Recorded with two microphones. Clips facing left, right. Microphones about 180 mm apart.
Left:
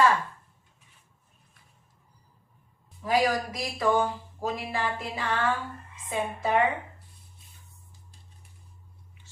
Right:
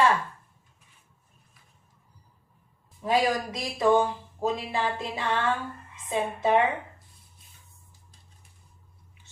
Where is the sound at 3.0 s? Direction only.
25° right (ahead or behind).